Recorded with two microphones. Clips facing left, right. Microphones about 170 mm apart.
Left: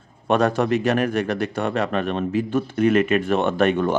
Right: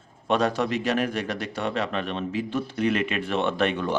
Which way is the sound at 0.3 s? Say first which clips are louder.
Left 5 dB; 50° left (ahead or behind).